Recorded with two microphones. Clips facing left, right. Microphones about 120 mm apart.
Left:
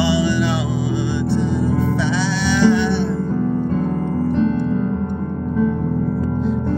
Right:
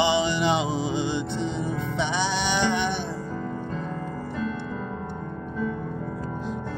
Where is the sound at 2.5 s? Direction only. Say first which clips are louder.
Left 12 dB; 20° right (ahead or behind).